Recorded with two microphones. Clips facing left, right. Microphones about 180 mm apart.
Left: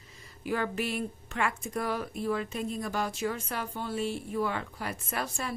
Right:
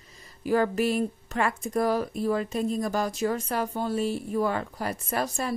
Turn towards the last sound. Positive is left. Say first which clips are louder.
# right 6 dB
turn(degrees=-40)  # may be behind; listen again after turning